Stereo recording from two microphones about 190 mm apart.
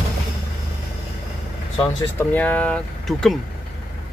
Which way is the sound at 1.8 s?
10° left (ahead or behind).